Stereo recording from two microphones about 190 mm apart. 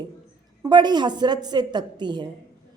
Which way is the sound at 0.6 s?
20° right (ahead or behind).